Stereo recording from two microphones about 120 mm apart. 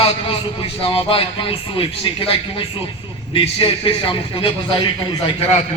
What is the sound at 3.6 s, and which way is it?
Speech, 50° left (ahead or behind).